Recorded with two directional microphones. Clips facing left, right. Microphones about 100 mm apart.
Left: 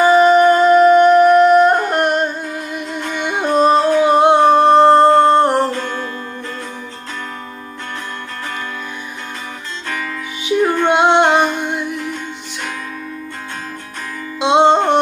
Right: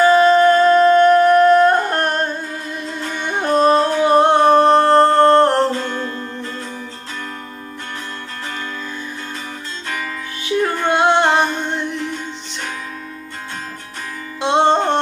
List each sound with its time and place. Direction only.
0.0 s music: 15° left (ahead or behind)
10.4 s music: 20° left (ahead or behind)
14.4 s music: 20° left (ahead or behind)